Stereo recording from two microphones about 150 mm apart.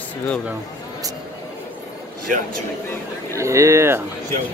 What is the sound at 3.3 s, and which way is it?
Speech, 20° right (ahead or behind).